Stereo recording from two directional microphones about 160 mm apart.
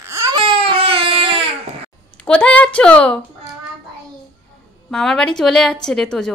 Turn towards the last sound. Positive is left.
turn(degrees=5)  # may be behind; listen again after turning